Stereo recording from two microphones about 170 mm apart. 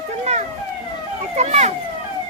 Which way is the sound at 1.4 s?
40° right (ahead or behind).